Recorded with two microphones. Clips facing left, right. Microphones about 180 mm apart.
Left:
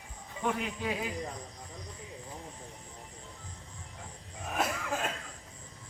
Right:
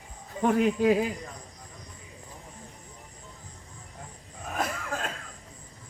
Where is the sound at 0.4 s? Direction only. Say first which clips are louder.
Right 11 dB; 45° right (ahead or behind).